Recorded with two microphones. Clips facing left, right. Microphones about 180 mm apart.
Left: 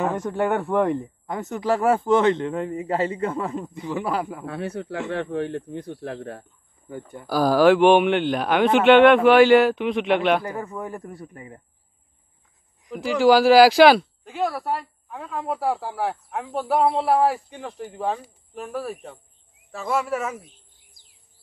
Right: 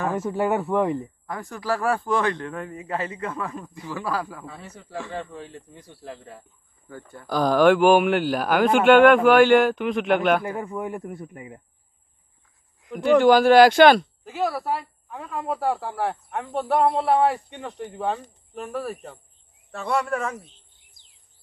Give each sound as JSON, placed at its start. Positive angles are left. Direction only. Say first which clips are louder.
{"t": 0.1, "sound": "speech", "louder": "even", "side_deg": -5}
{"t": 1.2, "sound": "a man's voice", "louder": "left 5 dB", "side_deg": 20}
{"t": 4.5, "sound": "speech", "louder": "left 11 dB", "side_deg": 70}
{"t": 6.9, "sound": "a man's voice", "louder": "left 5 dB", "side_deg": 20}
{"t": 7.2, "sound": "speech", "louder": "left 1 dB", "side_deg": 5}
{"t": 10.5, "sound": "a man's voice", "louder": "right 2 dB", "side_deg": -10}
{"t": 13.2, "sound": "speech", "louder": "left 2 dB", "side_deg": 5}